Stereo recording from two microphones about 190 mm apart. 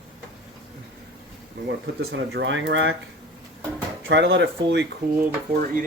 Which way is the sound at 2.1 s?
75° right (ahead or behind).